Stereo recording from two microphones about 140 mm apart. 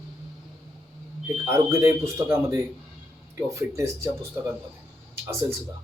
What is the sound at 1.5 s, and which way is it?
Speech, 20° right (ahead or behind).